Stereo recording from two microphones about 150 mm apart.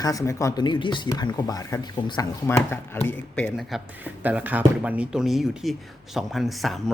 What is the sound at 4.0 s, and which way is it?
Speech, 10° right (ahead or behind).